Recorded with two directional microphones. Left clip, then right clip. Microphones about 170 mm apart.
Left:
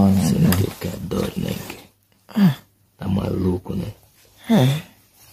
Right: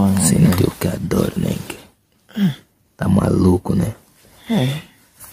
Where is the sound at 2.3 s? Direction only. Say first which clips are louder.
Left 2 dB; 20° left (ahead or behind).